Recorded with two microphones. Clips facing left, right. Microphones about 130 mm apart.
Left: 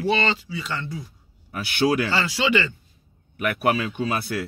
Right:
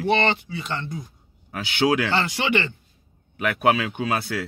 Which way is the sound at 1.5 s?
90° right.